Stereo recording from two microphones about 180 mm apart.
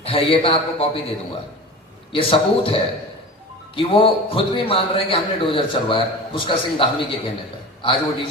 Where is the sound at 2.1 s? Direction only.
30° left (ahead or behind).